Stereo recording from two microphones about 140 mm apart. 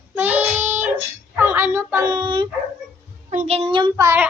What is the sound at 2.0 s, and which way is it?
Speech, 30° right (ahead or behind).